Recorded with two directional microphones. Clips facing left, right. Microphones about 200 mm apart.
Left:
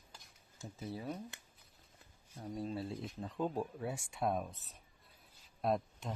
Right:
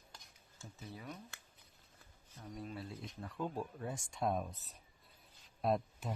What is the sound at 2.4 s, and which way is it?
Speech, 30° left (ahead or behind).